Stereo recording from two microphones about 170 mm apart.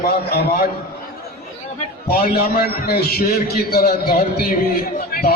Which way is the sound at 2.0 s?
65° left (ahead or behind).